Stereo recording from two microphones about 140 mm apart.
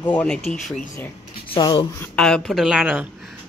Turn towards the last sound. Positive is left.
turn(degrees=-5)  # may be behind; listen again after turning